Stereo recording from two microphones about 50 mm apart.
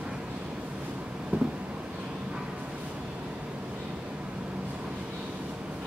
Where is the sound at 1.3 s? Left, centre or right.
Right.